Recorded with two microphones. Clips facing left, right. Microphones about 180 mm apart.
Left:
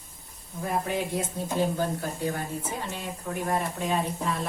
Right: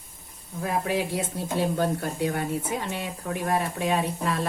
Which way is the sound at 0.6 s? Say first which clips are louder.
Right 2 dB; 80° right.